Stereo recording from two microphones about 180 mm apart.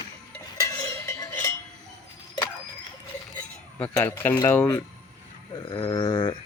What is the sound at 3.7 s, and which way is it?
Speech, 10° left (ahead or behind).